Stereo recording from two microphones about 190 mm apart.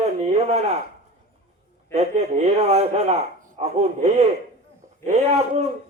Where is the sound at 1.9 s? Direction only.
35° right (ahead or behind).